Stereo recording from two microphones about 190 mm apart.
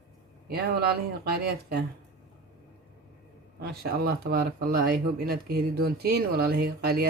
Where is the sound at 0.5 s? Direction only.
55° right (ahead or behind).